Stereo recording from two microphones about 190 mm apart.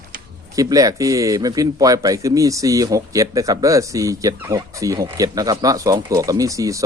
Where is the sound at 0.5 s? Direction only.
20° right (ahead or behind).